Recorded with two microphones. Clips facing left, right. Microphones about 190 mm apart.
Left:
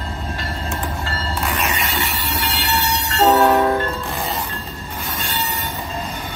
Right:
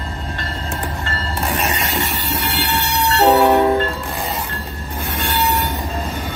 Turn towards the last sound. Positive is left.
turn(degrees=-70)  # may be behind; listen again after turning